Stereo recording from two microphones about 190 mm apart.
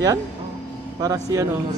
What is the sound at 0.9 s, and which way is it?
Speech, 20° right (ahead or behind).